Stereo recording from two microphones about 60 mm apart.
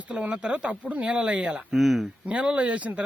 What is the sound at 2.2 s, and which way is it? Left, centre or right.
Speech, centre.